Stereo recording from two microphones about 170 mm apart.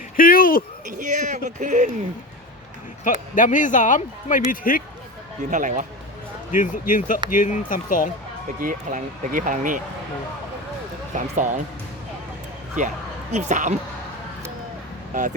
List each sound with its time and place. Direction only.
0.2 s a sound: 55° left (ahead or behind)
0.9 s speech: 50° right (ahead or behind)
3.0 s speech: 50° left (ahead or behind)
5.5 s speech: 45° right (ahead or behind)
6.5 s speech: 50° left (ahead or behind)
8.6 s speech: 50° right (ahead or behind)
11.1 s speech: 50° right (ahead or behind)
13.3 s speech: 45° right (ahead or behind)
15.1 s speech: 45° right (ahead or behind)